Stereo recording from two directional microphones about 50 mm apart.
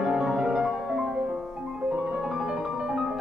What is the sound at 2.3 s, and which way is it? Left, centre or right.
Music, centre.